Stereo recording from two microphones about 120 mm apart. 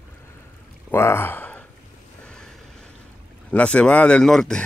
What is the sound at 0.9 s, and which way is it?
Speech, 20° left (ahead or behind).